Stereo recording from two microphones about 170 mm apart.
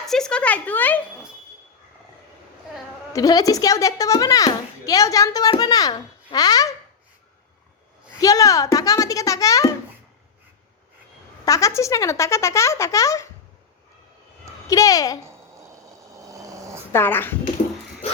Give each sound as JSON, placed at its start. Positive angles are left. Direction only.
{"t": 0.0, "sound": "speech", "side_deg": 5}
{"t": 3.1, "sound": "a child's voice", "side_deg": 20}
{"t": 8.2, "sound": "a child's voice", "side_deg": 20}
{"t": 11.4, "sound": "speech", "side_deg": 20}
{"t": 14.7, "sound": "a child's voice", "side_deg": 20}
{"t": 15.3, "sound": "a sound", "side_deg": -15}
{"t": 16.9, "sound": "speech", "side_deg": 10}